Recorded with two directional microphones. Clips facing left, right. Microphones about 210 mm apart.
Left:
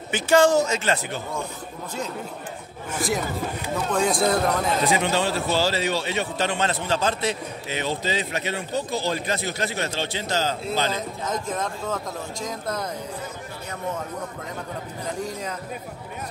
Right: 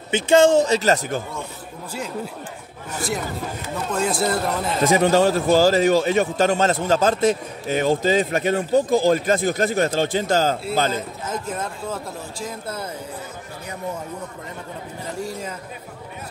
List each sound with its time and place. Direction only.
0.1 s speech: 25° right (ahead or behind); by 1.2 s 45° right (ahead or behind)
3.9 s speech: 5° right (ahead or behind)
4.8 s a man's voice: 45° right (ahead or behind)
10.9 s speech: 5° right (ahead or behind)